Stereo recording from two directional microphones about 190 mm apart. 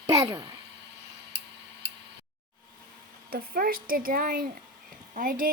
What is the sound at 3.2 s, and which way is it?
A woman's voice, 50° right (ahead or behind).